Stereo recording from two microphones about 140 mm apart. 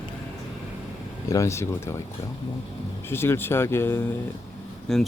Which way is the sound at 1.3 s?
20° left (ahead or behind).